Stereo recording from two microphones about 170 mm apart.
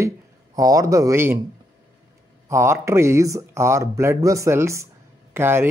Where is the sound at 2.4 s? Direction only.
15° right (ahead or behind).